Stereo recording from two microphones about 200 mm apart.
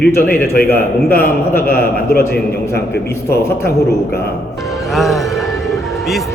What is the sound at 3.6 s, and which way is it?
Speech, 50° left (ahead or behind).